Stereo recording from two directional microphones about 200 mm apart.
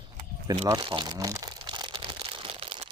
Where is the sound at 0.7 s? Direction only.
20° right (ahead or behind).